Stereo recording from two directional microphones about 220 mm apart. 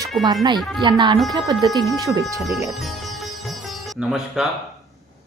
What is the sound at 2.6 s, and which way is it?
Music, centre (ahead or behind).